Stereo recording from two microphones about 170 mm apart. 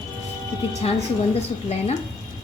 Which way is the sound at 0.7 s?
40° left (ahead or behind).